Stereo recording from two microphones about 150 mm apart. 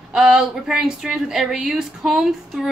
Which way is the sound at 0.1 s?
5° right (ahead or behind).